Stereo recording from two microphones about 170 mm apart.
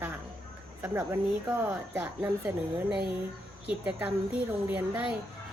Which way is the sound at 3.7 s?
5° right (ahead or behind).